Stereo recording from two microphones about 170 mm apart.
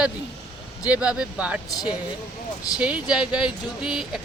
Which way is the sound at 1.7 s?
20° left (ahead or behind).